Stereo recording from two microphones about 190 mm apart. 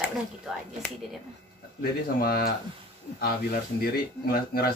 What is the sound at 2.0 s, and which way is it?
Speech, 50° left (ahead or behind).